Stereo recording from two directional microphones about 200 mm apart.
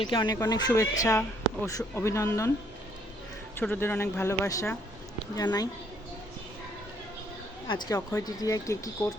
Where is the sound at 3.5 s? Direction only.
10° left (ahead or behind).